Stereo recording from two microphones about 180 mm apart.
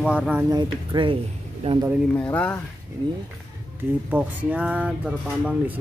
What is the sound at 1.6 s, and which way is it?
Speech, 35° right (ahead or behind).